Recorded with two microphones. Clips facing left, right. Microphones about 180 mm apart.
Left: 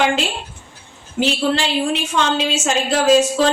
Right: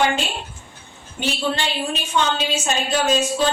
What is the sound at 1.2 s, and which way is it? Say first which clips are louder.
A woman's voice: left 5 dB; 90° left.